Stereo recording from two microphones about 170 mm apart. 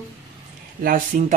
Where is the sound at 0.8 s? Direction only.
55° right (ahead or behind).